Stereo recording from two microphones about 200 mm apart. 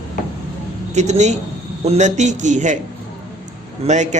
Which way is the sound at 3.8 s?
35° right (ahead or behind).